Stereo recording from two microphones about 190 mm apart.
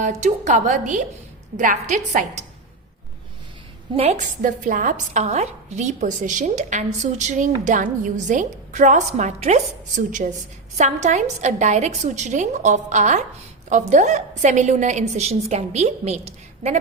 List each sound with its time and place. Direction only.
0.0 s a woman's voice: 40° right (ahead or behind)
3.9 s a woman's voice: 35° right (ahead or behind)